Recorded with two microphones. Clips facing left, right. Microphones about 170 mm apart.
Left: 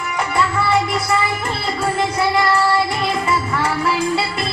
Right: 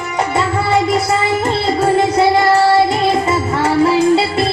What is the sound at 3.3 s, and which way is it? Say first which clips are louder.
Music: right 5 dB; 25° right (ahead or behind).